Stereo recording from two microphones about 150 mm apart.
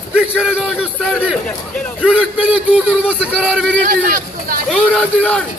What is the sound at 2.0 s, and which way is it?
A man's voice, 5° right (ahead or behind).